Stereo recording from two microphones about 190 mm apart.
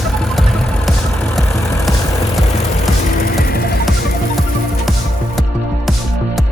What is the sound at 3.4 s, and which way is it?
Music, 50° left (ahead or behind).